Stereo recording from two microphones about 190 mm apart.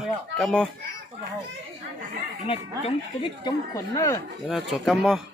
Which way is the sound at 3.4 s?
15° left (ahead or behind).